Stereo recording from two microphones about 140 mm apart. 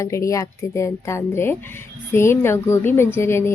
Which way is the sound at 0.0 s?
20° left (ahead or behind).